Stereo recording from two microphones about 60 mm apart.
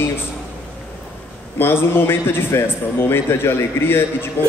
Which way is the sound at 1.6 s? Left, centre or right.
Left.